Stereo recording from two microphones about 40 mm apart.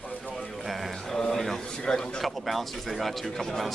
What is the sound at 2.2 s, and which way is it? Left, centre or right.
Speech, centre.